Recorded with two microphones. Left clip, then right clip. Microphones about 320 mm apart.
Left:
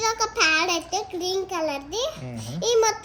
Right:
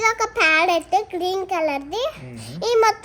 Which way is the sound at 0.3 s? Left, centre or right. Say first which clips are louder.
Right 4 dB; right.